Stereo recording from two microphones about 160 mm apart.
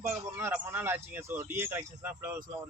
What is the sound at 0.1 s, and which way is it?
Speech, 15° right (ahead or behind).